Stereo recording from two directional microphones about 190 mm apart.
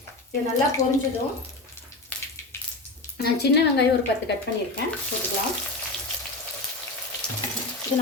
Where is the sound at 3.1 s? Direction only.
60° left (ahead or behind).